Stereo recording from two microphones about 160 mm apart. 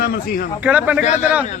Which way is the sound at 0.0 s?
70° left (ahead or behind).